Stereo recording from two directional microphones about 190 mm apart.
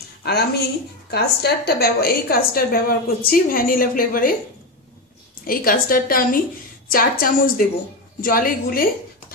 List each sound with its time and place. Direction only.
0.2 s a woman's voice: 55° left (ahead or behind)
5.5 s a woman's voice: 50° left (ahead or behind)